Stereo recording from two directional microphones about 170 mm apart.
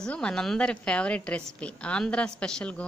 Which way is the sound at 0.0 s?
5° left (ahead or behind).